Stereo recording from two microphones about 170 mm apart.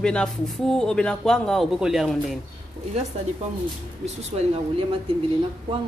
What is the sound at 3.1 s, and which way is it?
Speech, 40° right (ahead or behind).